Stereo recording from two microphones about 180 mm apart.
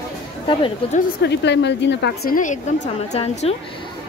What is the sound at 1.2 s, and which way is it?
A woman's voice, 70° left (ahead or behind).